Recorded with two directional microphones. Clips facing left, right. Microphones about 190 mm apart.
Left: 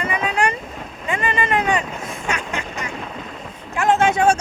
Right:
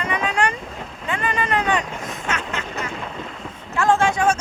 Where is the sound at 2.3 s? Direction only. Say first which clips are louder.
Even; 10° left (ahead or behind).